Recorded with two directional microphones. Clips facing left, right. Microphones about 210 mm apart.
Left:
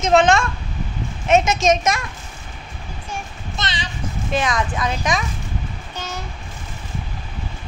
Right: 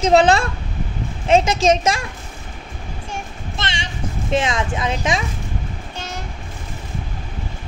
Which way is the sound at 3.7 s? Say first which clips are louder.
Right 1 dB; 25° right (ahead or behind).